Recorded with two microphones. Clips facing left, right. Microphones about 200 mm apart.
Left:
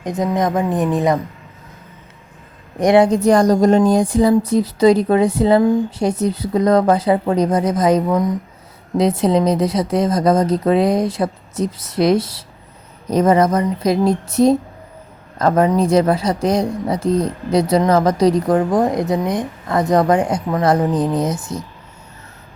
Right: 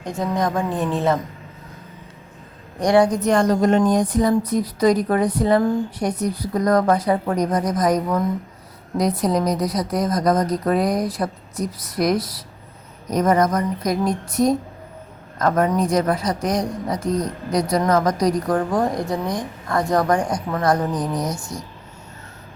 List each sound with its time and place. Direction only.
0.0 s speech: 20° left (ahead or behind)
2.7 s speech: 20° left (ahead or behind)
9.0 s speech: 25° left (ahead or behind)